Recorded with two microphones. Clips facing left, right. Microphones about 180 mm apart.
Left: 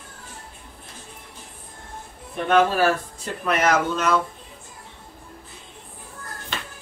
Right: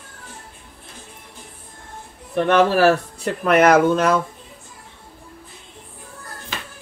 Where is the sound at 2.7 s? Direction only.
65° right (ahead or behind).